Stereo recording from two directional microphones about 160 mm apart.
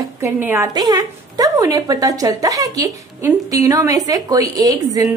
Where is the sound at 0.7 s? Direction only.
25° right (ahead or behind).